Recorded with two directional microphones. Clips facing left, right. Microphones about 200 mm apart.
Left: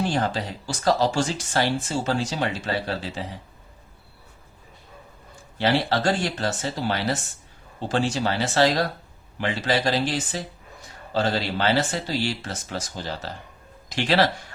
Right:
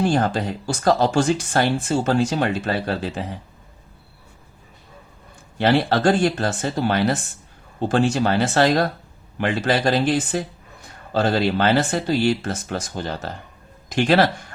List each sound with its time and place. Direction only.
0.1 s speech: 50° right (ahead or behind)
5.5 s speech: 55° right (ahead or behind)